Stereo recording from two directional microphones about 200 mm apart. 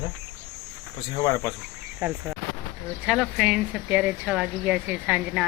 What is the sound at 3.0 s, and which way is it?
Speech, centre (ahead or behind).